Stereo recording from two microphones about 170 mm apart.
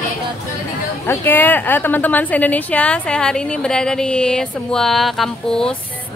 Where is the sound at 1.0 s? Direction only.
10° left (ahead or behind).